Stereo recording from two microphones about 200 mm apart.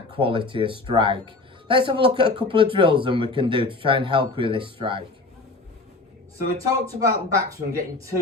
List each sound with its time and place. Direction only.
0.2 s speech: 25° right (ahead or behind)
6.6 s speech: 15° right (ahead or behind)